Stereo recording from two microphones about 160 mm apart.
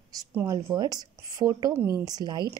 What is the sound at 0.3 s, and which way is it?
A woman's voice, 15° right (ahead or behind).